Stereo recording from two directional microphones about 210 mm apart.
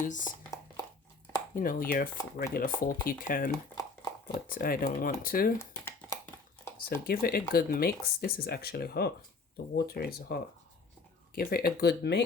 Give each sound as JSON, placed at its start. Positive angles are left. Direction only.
{"t": 0.0, "sound": "speech", "side_deg": 35}
{"t": 1.5, "sound": "speech", "side_deg": 40}
{"t": 3.5, "sound": "a sound", "side_deg": 15}
{"t": 4.5, "sound": "speech", "side_deg": 40}
{"t": 5.5, "sound": "a sound", "side_deg": 10}
{"t": 6.7, "sound": "speech", "side_deg": 45}
{"t": 11.3, "sound": "speech", "side_deg": 45}